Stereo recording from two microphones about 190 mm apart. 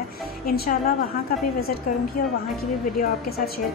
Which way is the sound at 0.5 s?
45° left (ahead or behind).